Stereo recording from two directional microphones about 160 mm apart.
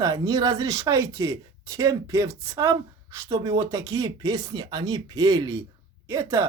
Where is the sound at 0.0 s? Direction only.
25° right (ahead or behind).